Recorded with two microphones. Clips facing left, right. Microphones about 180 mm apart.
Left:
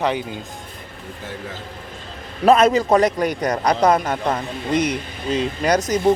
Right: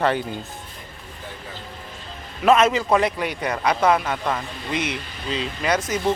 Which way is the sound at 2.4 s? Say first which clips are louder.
Left 3 dB; 35° left (ahead or behind).